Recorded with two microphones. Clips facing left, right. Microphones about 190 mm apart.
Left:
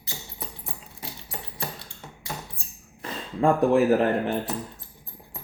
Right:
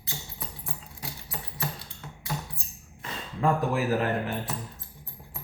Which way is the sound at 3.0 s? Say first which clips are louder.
Left 5 dB; 30° left (ahead or behind).